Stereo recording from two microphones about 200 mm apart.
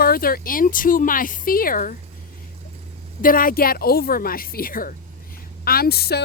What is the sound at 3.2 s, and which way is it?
Speech, 45° left (ahead or behind).